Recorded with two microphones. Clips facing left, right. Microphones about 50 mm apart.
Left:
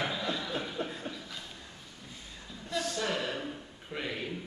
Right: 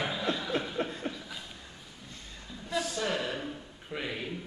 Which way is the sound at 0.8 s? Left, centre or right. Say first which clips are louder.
Right 3 dB; right.